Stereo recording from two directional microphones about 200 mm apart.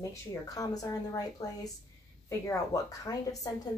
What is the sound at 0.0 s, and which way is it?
A woman's voice, 15° left (ahead or behind).